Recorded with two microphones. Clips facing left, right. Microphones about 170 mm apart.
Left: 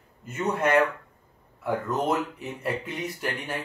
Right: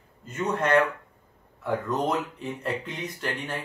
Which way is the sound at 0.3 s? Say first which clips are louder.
Even; 10° left (ahead or behind).